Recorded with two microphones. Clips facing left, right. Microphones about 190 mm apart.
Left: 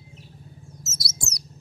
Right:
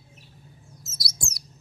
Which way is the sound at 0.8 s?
25° left (ahead or behind).